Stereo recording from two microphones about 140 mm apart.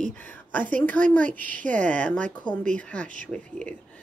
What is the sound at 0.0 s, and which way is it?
A woman's voice, 10° left (ahead or behind).